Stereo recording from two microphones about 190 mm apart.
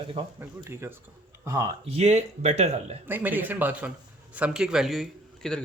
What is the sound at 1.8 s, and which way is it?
Speech, 35° right (ahead or behind).